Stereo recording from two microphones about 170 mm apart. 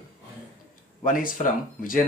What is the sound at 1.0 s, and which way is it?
Speech, 55° left (ahead or behind).